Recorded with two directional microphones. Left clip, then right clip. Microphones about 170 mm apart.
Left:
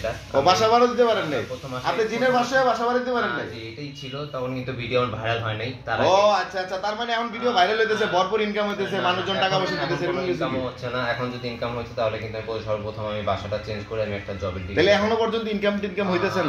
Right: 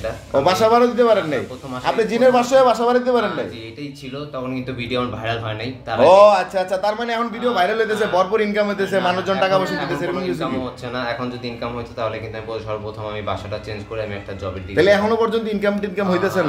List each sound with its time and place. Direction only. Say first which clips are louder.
0.3 s a man's voice: right 3 dB; 35° right (ahead or behind)
1.9 s a man's voice: right 6 dB; 50° right (ahead or behind)
5.9 s a man's voice: right 8 dB; 55° right (ahead or behind)
7.4 s a man's voice: right 1 dB; 25° right (ahead or behind)
14.8 s a man's voice: right 4 dB; 25° right (ahead or behind)